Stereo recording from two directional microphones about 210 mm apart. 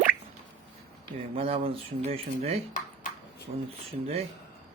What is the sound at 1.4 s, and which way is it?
Speech, 25° right (ahead or behind).